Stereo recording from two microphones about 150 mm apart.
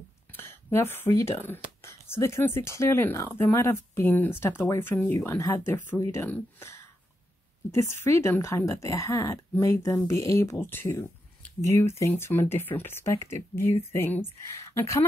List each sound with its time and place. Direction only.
0.3 s speech: 15° left (ahead or behind)
7.9 s speech: 15° left (ahead or behind)